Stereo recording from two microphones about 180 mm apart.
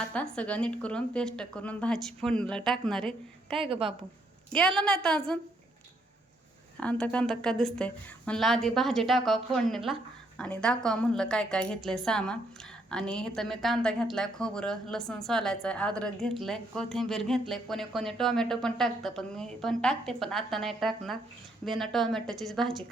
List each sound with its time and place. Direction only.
0.0 s a woman's voice: 5° left (ahead or behind)
3.6 s speech: 30° right (ahead or behind)
4.5 s a woman's voice: 5° left (ahead or behind)
6.7 s a woman's voice: 5° left (ahead or behind)